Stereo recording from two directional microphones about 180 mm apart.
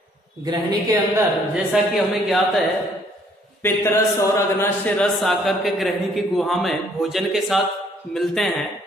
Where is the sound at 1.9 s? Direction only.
Centre (ahead or behind).